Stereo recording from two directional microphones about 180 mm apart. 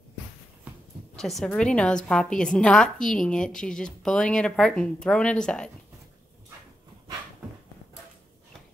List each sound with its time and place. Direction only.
1.1 s a woman's voice: centre (ahead or behind)